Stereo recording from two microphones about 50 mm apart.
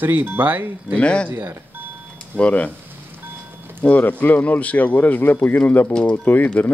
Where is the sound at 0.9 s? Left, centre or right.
Left.